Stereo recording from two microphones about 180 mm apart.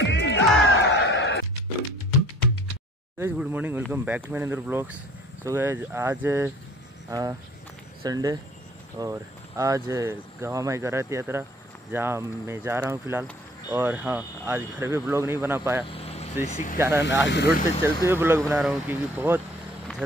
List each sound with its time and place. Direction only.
0.0 s music: 90° left
3.2 s speech: 10° right (ahead or behind)
15.9 s vehicle: 35° left (ahead or behind)
16.4 s speech: 40° left (ahead or behind)
16.7 s speech: 15° right (ahead or behind)